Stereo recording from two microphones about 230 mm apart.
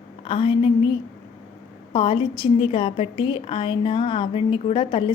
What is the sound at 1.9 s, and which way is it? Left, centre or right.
A woman's voice, left.